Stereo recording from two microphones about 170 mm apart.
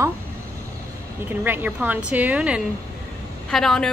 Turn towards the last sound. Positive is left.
turn(degrees=0)  # may be behind; listen again after turning